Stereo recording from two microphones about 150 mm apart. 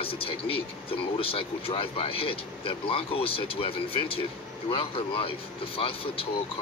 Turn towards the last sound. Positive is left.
turn(degrees=40)  # may be behind; listen again after turning